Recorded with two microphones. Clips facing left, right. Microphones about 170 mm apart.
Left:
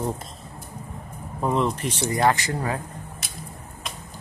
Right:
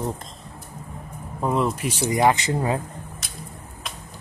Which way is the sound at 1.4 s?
5° right (ahead or behind).